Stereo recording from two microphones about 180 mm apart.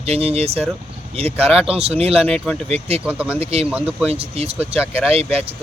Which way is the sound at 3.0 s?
5° right (ahead or behind).